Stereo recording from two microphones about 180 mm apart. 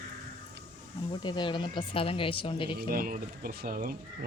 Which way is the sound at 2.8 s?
55° right (ahead or behind).